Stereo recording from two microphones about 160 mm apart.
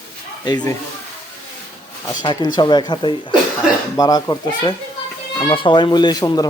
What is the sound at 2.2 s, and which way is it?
A man's voice, 25° left (ahead or behind).